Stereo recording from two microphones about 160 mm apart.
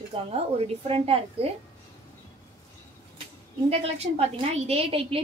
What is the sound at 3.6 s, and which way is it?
A woman's voice, 40° right (ahead or behind).